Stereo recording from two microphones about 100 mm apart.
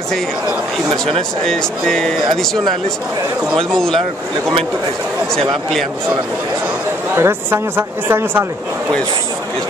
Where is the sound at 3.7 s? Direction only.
5° left (ahead or behind).